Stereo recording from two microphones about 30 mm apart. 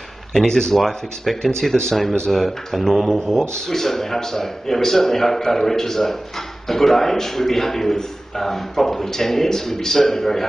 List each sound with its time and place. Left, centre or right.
0.5 s speech: centre
0.7 s a man's voice: centre